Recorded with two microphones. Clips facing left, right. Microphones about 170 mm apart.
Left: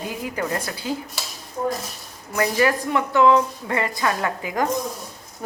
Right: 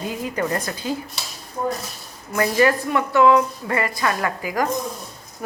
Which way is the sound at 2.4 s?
15° left (ahead or behind).